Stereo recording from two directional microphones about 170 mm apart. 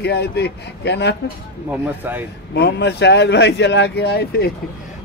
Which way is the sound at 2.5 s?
80° left.